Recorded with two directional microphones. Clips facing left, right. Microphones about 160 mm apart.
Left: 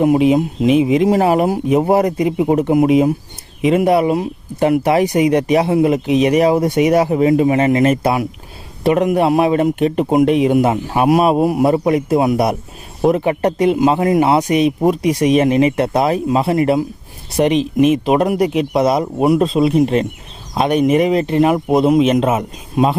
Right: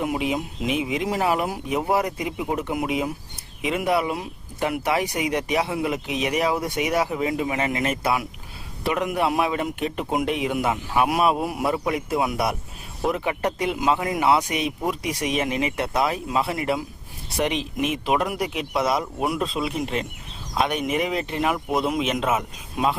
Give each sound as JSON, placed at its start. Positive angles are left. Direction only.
{"t": 0.0, "sound": "speech", "side_deg": 35}